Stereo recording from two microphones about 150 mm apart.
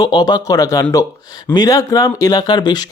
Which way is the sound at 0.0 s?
25° left (ahead or behind).